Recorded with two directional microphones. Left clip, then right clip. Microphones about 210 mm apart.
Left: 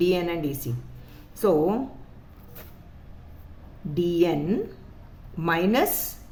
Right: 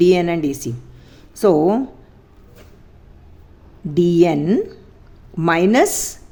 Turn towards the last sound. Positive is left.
turn(degrees=-35)  # may be behind; listen again after turning